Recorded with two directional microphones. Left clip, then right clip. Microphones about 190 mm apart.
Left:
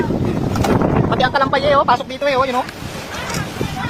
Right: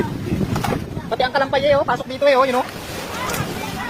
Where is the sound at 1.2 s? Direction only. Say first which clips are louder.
Even; 5° right (ahead or behind).